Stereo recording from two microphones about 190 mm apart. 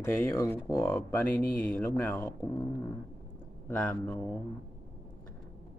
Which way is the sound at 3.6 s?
10° left (ahead or behind).